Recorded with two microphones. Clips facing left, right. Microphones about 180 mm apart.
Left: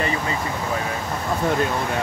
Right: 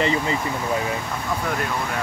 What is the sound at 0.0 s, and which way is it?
Speech, 25° right (ahead or behind).